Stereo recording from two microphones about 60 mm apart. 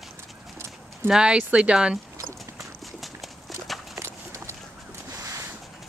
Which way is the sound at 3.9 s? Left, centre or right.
Right.